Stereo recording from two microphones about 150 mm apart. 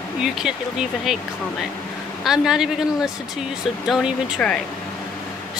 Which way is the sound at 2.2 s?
5° right (ahead or behind).